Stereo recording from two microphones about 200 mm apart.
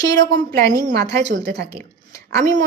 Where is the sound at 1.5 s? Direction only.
55° right (ahead or behind).